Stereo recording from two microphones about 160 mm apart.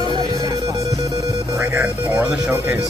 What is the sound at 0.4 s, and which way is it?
Music, 20° right (ahead or behind).